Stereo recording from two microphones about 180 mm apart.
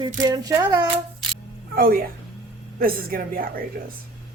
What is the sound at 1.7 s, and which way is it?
Speech, 55° right (ahead or behind).